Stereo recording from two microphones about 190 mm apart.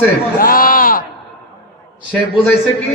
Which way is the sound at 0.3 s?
50° left (ahead or behind).